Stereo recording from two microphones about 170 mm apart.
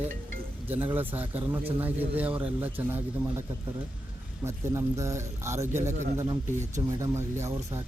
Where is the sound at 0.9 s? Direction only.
10° right (ahead or behind).